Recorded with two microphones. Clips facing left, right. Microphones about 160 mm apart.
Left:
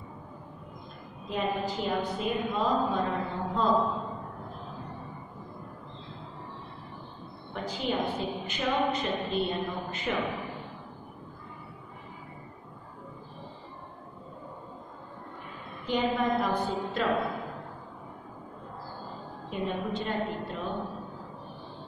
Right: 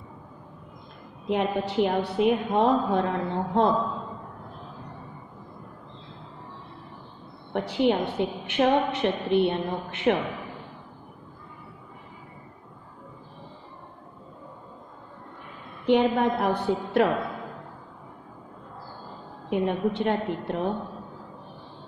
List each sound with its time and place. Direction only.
1.2 s a woman's voice: 70° right (ahead or behind)
7.5 s a woman's voice: 70° right (ahead or behind)
15.8 s a woman's voice: 65° right (ahead or behind)
19.5 s a woman's voice: 65° right (ahead or behind)